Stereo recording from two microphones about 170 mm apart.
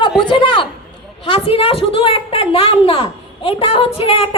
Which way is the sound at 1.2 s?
35° left (ahead or behind).